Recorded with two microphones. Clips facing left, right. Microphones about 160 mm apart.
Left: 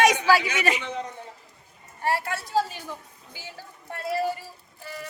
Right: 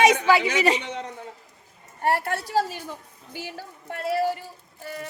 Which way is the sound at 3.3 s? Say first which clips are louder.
Right 7 dB; 70° right (ahead or behind).